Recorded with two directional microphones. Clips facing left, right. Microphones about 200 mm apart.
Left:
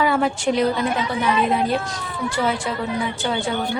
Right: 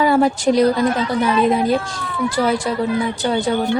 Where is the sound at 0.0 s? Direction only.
40° right (ahead or behind).